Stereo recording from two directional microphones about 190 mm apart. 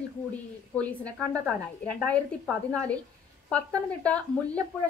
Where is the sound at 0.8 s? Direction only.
5° left (ahead or behind).